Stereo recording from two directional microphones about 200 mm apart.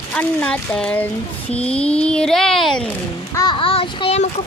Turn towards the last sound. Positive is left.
turn(degrees=30)  # may be behind; listen again after turning